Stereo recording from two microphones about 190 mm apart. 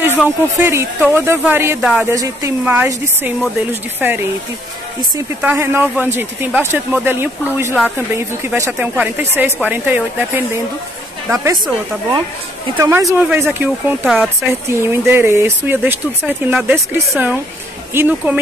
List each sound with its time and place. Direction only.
0.6 s speech: 10° right (ahead or behind)
5.4 s speech: 10° right (ahead or behind)